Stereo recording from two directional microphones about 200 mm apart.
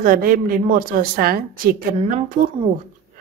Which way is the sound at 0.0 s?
45° right (ahead or behind).